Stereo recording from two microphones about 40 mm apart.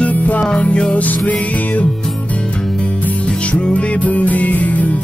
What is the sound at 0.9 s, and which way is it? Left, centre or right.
Music, left.